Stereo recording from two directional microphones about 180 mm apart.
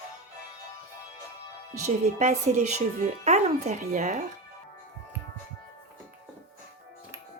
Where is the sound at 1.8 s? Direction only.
40° right (ahead or behind).